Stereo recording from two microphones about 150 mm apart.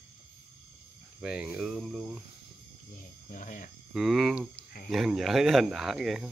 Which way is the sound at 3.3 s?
60° left (ahead or behind).